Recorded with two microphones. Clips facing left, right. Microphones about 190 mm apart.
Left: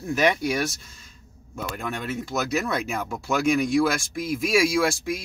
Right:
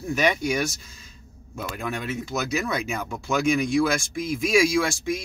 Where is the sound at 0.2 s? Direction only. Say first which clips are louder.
Left 1 dB; 5° left (ahead or behind).